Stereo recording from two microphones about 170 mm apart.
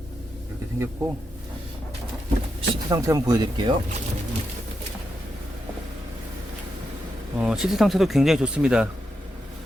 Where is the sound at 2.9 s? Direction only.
20° right (ahead or behind).